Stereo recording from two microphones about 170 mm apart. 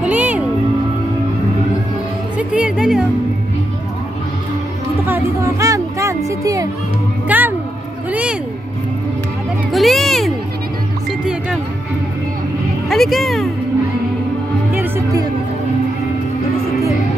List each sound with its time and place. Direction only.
0.0 s music: 10° right (ahead or behind)
2.3 s music: 5° right (ahead or behind)
5.0 s music: 15° right (ahead or behind)
9.7 s a sound: centre (ahead or behind)
12.8 s music: centre (ahead or behind)
14.7 s music: 10° right (ahead or behind)